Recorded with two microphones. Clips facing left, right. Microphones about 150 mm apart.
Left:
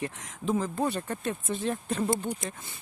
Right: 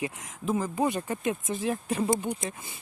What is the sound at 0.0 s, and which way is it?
Speech, 5° right (ahead or behind).